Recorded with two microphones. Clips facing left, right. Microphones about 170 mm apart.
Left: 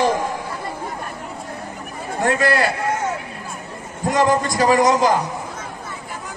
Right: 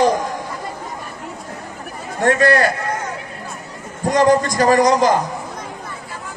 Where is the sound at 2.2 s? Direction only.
45° right (ahead or behind).